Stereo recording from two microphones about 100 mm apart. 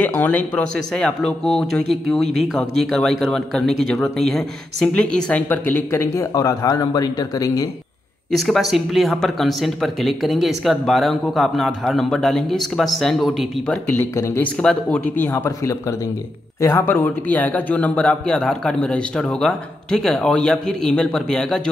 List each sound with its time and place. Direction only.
0.0 s speech: 15° left (ahead or behind); by 7.6 s 35° left (ahead or behind)
8.3 s speech: centre (ahead or behind)
13.7 s speech: 20° left (ahead or behind)
15.3 s speech: 30° left (ahead or behind); by 21.5 s 5° left (ahead or behind)